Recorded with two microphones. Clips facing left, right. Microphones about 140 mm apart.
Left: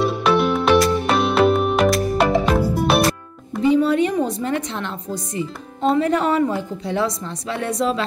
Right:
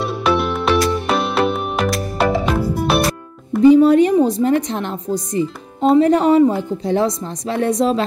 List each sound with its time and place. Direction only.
0.0 s music: centre (ahead or behind)
3.6 s a sound: 40° right (ahead or behind)
4.3 s speech: 35° right (ahead or behind)